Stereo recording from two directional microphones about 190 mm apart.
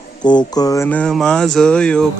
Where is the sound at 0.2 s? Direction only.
20° left (ahead or behind).